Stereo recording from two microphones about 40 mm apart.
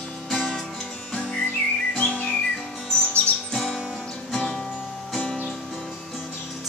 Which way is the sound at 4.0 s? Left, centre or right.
Left.